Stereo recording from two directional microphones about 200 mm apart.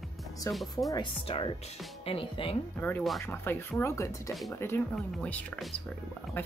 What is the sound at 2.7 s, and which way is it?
Speech, 10° left (ahead or behind).